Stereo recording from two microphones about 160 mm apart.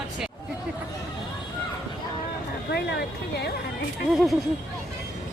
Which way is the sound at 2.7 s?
90° left.